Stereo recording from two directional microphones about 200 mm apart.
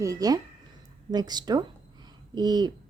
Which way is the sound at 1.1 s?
20° right (ahead or behind).